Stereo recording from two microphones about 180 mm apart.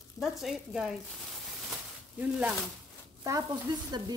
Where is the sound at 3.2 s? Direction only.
20° right (ahead or behind).